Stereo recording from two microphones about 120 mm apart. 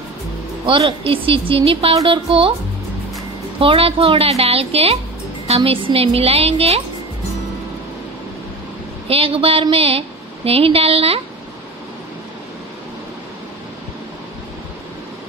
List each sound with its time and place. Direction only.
0.7 s speech: 50° right (ahead or behind)
3.5 s a woman's voice: 50° right (ahead or behind)
9.0 s a woman's voice: 55° right (ahead or behind)